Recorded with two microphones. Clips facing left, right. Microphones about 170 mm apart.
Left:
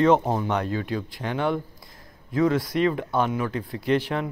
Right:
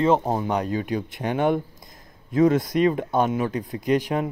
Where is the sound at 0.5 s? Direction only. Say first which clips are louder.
Right 2 dB; 15° right (ahead or behind).